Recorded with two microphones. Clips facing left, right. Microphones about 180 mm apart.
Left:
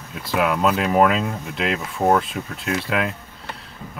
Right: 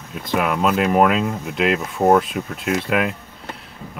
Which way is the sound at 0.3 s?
Centre (ahead or behind).